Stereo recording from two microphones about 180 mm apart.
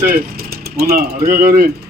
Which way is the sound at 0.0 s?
55° right (ahead or behind).